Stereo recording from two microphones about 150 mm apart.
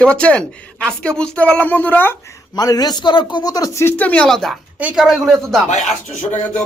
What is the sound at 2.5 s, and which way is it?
A man's voice, 25° left (ahead or behind).